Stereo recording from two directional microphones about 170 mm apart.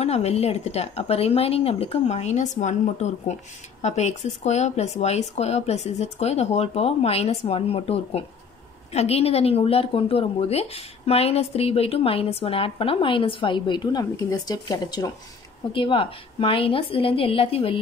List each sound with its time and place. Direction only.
0.0 s a woman's voice: 40° left (ahead or behind)